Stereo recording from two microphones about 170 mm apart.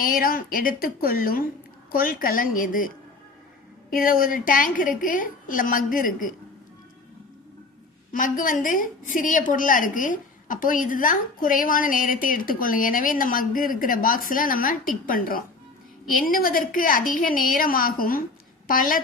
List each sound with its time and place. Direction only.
0.0 s a woman's voice: 55° left (ahead or behind)
8.1 s a woman's voice: 50° left (ahead or behind)